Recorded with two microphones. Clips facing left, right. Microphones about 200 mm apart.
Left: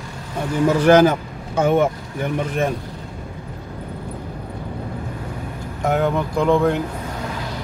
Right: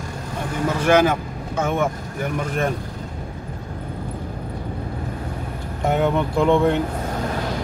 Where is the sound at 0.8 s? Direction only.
40° left (ahead or behind).